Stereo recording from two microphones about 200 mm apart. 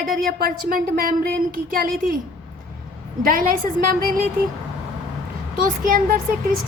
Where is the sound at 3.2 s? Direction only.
45° right (ahead or behind).